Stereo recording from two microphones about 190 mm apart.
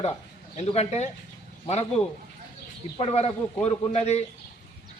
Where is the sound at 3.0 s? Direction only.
30° left (ahead or behind).